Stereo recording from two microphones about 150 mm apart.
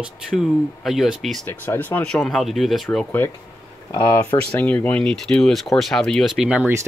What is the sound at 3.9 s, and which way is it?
Speech, 20° left (ahead or behind).